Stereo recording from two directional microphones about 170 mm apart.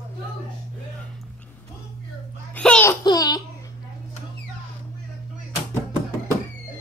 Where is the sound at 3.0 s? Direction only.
25° left (ahead or behind).